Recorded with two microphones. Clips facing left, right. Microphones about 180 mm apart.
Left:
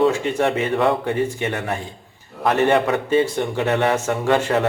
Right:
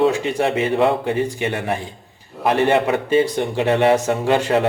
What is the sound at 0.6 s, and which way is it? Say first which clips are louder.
A man's voice: right 2 dB; 25° right (ahead or behind).